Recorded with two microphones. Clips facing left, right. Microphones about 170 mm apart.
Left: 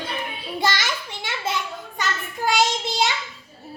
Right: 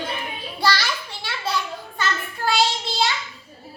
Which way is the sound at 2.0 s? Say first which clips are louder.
Even; 15° left (ahead or behind).